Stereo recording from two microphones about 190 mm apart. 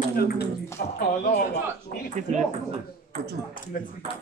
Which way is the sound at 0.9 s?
50° left (ahead or behind).